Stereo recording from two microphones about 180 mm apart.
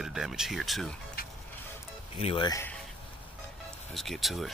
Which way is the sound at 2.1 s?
30° left (ahead or behind).